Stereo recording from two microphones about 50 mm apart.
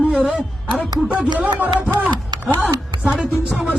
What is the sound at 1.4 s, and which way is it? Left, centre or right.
Speech, right.